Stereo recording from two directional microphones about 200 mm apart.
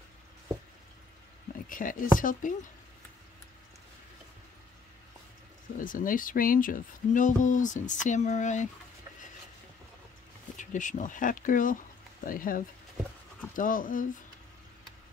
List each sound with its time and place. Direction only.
1.7 s speech: 45° left (ahead or behind)
5.8 s speech: 40° left (ahead or behind)
10.6 s speech: 40° left (ahead or behind)